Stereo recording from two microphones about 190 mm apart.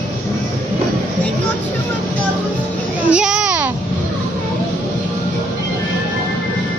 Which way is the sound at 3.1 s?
5° right (ahead or behind).